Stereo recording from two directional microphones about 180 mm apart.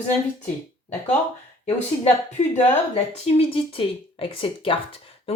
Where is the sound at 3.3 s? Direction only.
30° left (ahead or behind).